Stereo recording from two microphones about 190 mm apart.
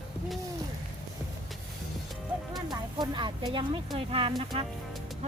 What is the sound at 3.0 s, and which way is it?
Speech, 25° right (ahead or behind).